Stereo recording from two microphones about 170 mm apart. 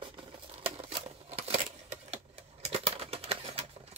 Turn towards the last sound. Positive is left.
turn(degrees=-40)  # may be behind; listen again after turning